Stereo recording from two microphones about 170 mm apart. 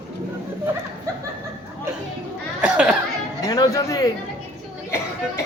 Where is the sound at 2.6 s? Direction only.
5° right (ahead or behind).